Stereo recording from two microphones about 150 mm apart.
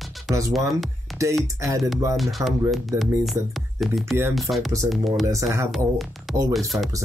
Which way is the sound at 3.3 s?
Centre (ahead or behind).